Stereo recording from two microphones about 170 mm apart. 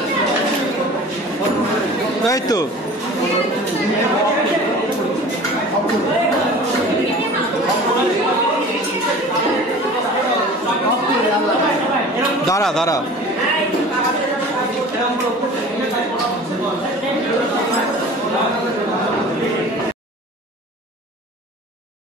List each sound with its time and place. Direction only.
2.2 s speech: 20° left (ahead or behind)